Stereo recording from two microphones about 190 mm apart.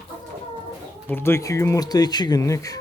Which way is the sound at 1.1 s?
15° left (ahead or behind).